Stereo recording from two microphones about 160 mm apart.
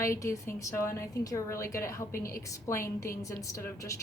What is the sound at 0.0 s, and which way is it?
A woman's voice, 20° left (ahead or behind).